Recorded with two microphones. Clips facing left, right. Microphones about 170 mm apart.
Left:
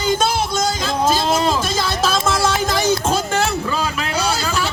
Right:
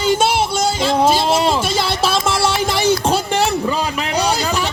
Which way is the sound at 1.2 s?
25° right (ahead or behind).